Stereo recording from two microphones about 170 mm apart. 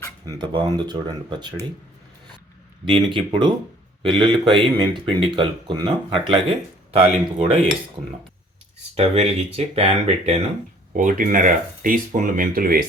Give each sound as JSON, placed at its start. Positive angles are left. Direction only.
{"t": 0.3, "sound": "speech", "side_deg": -25}
{"t": 2.8, "sound": "speech", "side_deg": -30}
{"t": 9.0, "sound": "speech", "side_deg": -35}
{"t": 10.9, "sound": "speech", "side_deg": -50}